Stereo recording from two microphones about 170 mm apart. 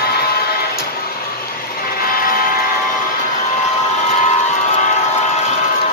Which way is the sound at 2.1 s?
60° left (ahead or behind).